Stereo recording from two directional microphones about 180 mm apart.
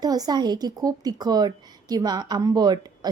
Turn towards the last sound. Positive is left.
turn(degrees=-20)  # may be behind; listen again after turning